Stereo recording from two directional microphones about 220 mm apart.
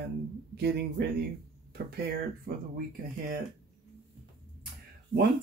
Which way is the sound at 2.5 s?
40° right (ahead or behind).